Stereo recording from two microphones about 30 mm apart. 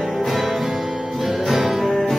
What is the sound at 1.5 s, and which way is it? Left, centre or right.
Music, centre.